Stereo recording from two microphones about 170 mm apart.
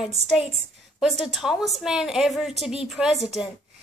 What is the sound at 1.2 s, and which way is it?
A woman's voice, centre (ahead or behind).